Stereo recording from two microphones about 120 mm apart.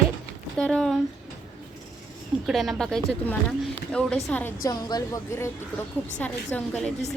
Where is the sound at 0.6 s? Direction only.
5° left (ahead or behind).